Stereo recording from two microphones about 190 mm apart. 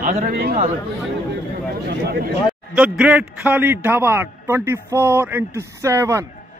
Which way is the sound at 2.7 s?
5° right (ahead or behind).